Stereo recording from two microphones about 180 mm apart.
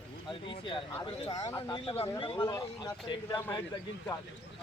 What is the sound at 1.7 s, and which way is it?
Speech, 30° left (ahead or behind).